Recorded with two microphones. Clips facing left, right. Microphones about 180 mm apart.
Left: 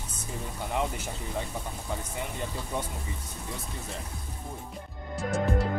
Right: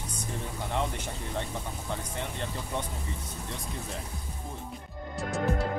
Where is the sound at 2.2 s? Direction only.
10° left (ahead or behind).